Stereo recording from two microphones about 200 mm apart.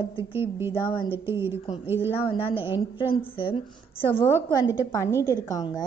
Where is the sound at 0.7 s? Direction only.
25° left (ahead or behind).